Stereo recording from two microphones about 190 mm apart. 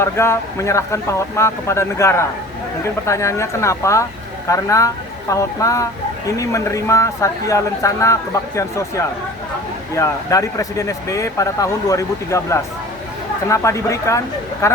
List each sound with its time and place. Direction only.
0.0 s speech: 15° left (ahead or behind)